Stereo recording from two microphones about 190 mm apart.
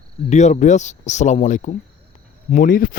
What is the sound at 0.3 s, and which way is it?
Speech, 40° left (ahead or behind).